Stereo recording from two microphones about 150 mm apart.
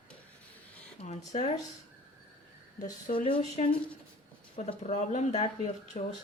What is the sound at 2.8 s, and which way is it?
Speech, 60° left (ahead or behind).